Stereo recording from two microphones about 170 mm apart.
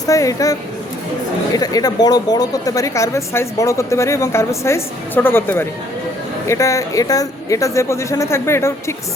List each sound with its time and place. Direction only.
0.1 s speech: 20° left (ahead or behind)
1.5 s a woman's voice: 20° left (ahead or behind)